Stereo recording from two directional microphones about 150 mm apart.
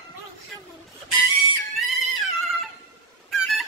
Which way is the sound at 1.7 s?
Centre (ahead or behind).